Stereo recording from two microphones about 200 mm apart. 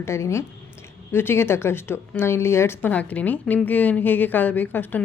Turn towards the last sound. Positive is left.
turn(degrees=10)  # may be behind; listen again after turning